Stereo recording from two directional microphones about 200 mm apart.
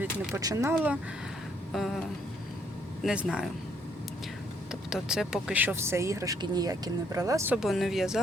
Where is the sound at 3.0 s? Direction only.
5° right (ahead or behind).